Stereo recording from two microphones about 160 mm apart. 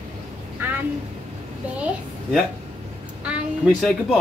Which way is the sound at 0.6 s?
15° right (ahead or behind).